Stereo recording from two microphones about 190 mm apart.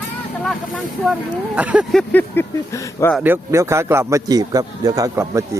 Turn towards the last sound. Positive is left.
turn(degrees=-15)  # may be behind; listen again after turning